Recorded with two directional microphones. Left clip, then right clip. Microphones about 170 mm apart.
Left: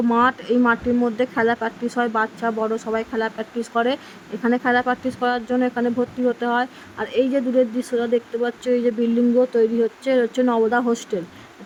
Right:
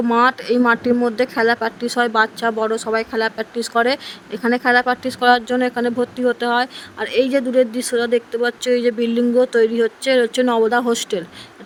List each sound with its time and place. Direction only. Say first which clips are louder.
0.1 s speech: right 4 dB; 25° right (ahead or behind)